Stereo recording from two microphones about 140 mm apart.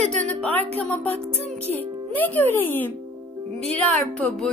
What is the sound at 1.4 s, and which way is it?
Music, 50° right (ahead or behind).